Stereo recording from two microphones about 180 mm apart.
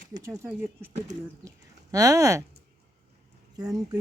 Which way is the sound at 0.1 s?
15° right (ahead or behind).